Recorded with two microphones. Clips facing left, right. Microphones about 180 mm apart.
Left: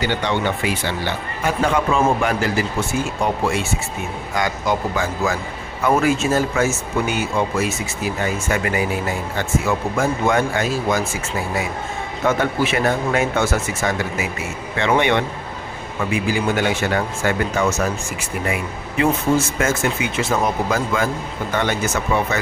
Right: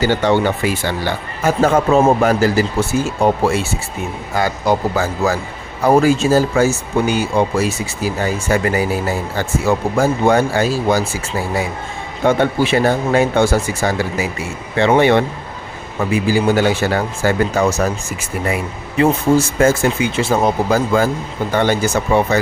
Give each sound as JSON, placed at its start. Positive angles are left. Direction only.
{"t": 0.0, "sound": "speech", "side_deg": -40}